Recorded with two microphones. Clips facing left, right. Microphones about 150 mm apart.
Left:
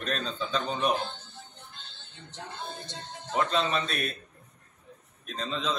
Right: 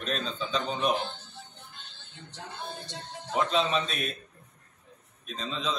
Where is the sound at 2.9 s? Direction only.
10° right (ahead or behind).